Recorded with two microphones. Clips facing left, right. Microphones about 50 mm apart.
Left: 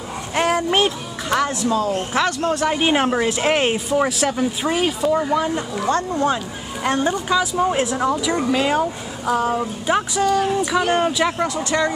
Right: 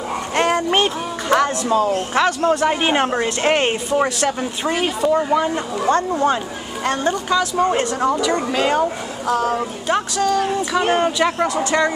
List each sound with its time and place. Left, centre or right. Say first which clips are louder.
0.3 s music: right 1 dB; centre
2.1 s speech: right 4 dB; centre
9.3 s speech: even; centre